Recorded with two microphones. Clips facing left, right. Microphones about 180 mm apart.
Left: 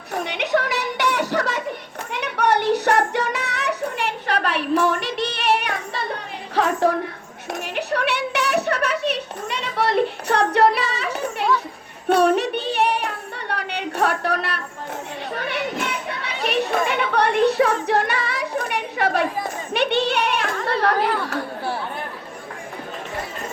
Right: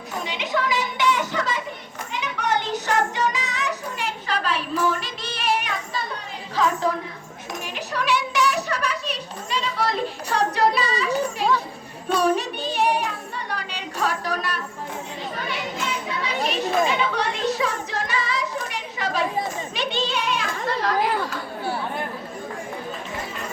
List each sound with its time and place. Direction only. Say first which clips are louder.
0.1 s a sound: left 5 dB; 65° left (ahead or behind)
2.0 s child singing: left 5 dB; 65° left (ahead or behind)
6.6 s a woman's voice: left 3 dB; 60° left (ahead or behind)
7.5 s a sound: left 5 dB; 60° left (ahead or behind)
12.0 s child singing: left 4 dB; 60° left (ahead or behind)
15.4 s children playing: left 5 dB; 60° left (ahead or behind)